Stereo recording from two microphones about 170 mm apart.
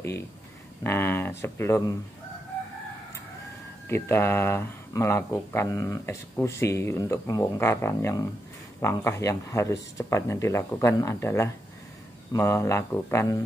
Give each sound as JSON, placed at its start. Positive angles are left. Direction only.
{"t": 0.8, "sound": "speech", "side_deg": 15}
{"t": 3.9, "sound": "speech", "side_deg": 15}